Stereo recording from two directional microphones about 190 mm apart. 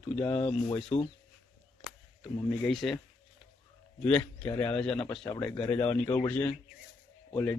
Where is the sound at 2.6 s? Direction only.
Centre (ahead or behind).